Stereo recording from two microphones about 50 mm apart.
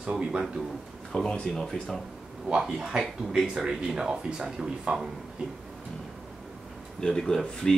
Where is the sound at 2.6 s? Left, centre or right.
Centre.